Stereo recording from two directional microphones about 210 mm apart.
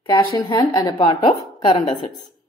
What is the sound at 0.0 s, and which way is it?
Speech, 20° left (ahead or behind).